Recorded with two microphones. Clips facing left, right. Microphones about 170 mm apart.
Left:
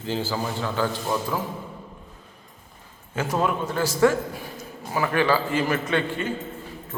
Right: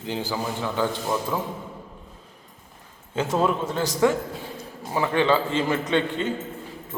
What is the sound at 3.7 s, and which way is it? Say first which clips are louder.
A man's voice: left 1 dB; 20° right (ahead or behind).